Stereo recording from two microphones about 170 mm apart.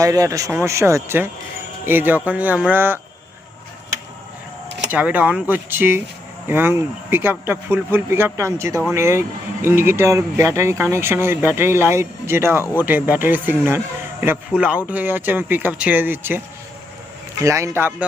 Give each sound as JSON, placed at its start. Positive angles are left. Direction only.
{"t": 0.0, "sound": "speech", "side_deg": -20}
{"t": 4.9, "sound": "speech", "side_deg": -10}
{"t": 17.4, "sound": "speech", "side_deg": -15}